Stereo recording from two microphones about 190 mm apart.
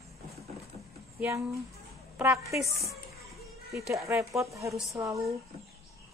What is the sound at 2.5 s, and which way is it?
Speech, centre (ahead or behind).